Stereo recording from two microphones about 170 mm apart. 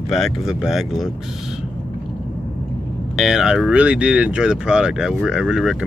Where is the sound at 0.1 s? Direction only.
Centre (ahead or behind).